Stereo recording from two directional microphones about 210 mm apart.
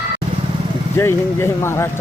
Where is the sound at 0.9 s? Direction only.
10° left (ahead or behind).